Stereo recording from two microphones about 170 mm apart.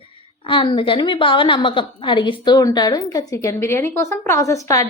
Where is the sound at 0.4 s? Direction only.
30° left (ahead or behind).